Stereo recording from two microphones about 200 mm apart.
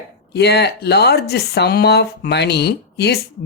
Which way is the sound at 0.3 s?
55° left (ahead or behind).